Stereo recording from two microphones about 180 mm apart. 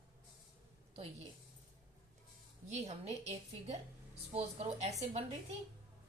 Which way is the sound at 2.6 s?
35° right (ahead or behind).